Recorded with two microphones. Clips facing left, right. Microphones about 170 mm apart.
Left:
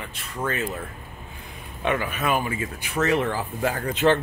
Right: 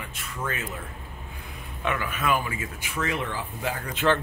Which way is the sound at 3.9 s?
20° left (ahead or behind).